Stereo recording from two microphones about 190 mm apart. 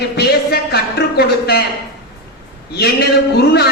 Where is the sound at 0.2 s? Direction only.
60° left (ahead or behind).